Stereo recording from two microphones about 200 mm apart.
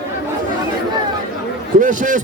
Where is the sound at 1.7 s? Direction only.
40° right (ahead or behind).